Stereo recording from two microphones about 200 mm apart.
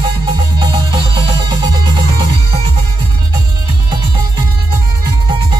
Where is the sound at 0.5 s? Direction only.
25° right (ahead or behind).